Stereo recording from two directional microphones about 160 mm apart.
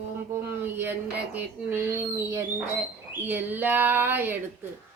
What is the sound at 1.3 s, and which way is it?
Speech, 15° right (ahead or behind).